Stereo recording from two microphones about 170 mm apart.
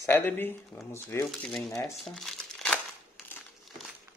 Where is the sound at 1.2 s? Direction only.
Centre (ahead or behind).